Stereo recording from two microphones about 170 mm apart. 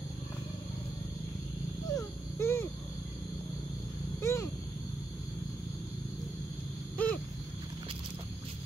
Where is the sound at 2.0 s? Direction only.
15° left (ahead or behind).